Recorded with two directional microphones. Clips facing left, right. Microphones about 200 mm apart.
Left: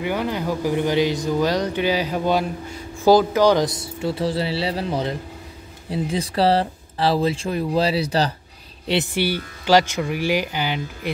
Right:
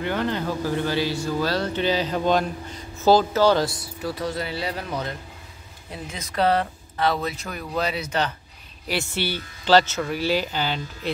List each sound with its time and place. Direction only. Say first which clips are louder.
0.0 s speech: left 1 dB; 10° left (ahead or behind); by 8.4 s 35° left (ahead or behind)
8.8 s speech: left 5 dB; 20° left (ahead or behind)